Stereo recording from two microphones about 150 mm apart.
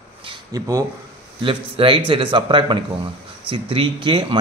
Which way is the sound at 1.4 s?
35° right (ahead or behind).